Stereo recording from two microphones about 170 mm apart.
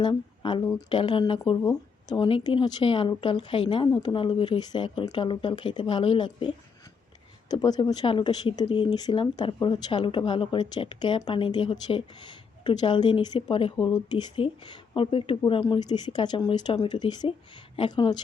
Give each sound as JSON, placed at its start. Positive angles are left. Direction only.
{"t": 0.0, "sound": "speech", "side_deg": 25}